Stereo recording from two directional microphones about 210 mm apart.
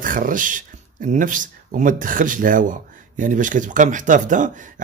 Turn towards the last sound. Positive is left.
turn(degrees=-35)  # may be behind; listen again after turning